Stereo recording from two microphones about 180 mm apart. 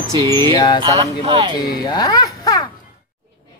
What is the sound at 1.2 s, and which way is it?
Speech, 25° right (ahead or behind).